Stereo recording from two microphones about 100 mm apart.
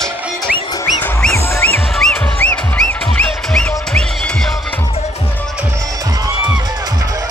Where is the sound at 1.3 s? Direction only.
25° left (ahead or behind).